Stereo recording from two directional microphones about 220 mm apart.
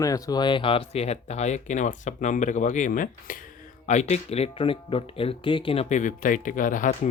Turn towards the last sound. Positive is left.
turn(degrees=35)  # may be behind; listen again after turning